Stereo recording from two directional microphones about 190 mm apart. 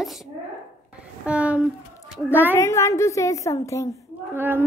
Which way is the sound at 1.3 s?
5° right (ahead or behind).